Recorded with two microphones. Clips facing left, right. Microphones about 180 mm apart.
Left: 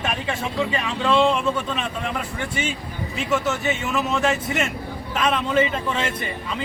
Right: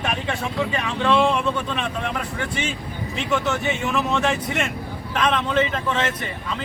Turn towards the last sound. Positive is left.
turn(degrees=10)  # may be behind; listen again after turning